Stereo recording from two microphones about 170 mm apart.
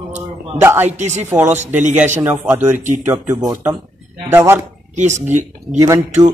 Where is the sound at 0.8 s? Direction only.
45° right (ahead or behind).